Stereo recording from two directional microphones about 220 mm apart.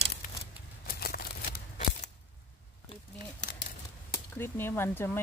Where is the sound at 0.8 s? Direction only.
45° left (ahead or behind).